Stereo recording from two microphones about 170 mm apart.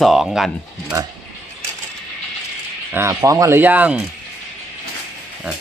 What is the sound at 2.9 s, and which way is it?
Speech, 20° right (ahead or behind).